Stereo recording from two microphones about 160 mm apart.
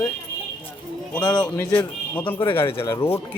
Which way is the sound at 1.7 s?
10° left (ahead or behind).